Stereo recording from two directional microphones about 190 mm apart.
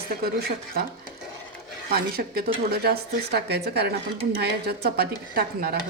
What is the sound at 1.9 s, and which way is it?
A woman's voice, 55° right (ahead or behind).